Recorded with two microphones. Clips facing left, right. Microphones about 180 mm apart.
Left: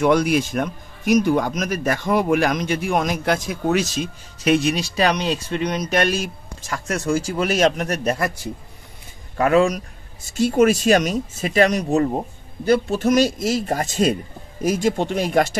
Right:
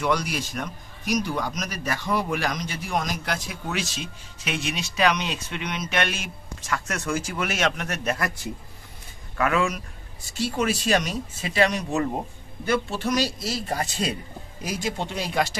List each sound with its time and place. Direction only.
0.0 s speech: 50° left (ahead or behind); by 8.3 s 35° left (ahead or behind)
9.4 s speech: 35° left (ahead or behind)